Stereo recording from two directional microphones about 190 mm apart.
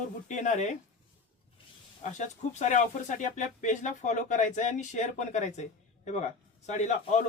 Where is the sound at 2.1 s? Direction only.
40° left (ahead or behind).